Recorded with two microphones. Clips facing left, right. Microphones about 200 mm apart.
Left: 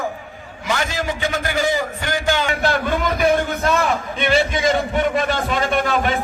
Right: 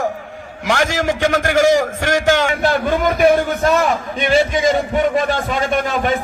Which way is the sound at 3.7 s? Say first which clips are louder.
Right 3 dB; 45° right (ahead or behind).